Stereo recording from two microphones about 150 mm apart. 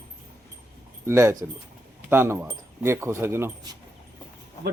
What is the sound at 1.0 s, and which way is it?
Speech, 20° right (ahead or behind).